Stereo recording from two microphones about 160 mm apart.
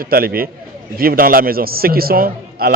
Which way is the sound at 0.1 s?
70° right (ahead or behind).